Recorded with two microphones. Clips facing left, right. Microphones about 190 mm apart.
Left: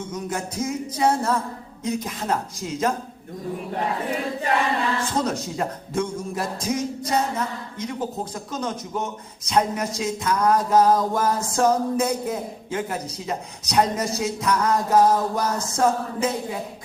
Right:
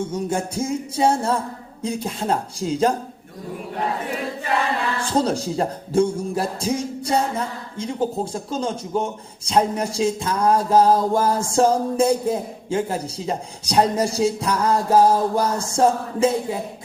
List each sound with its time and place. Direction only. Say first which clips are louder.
0.1 s a man's voice: right 5 dB; 30° right (ahead or behind)
4.9 s a man's voice: right 3 dB; 30° right (ahead or behind)